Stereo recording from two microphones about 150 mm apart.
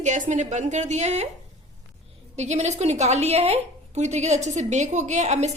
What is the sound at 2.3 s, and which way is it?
A woman's voice, 50° right (ahead or behind).